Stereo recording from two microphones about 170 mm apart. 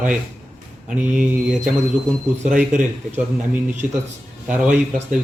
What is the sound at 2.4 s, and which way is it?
Speech, 50° right (ahead or behind).